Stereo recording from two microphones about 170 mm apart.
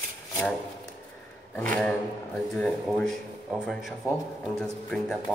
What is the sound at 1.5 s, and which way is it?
Speech, 10° left (ahead or behind).